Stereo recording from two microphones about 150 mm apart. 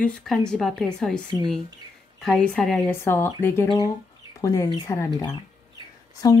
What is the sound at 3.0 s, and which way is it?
A woman's voice, 15° left (ahead or behind).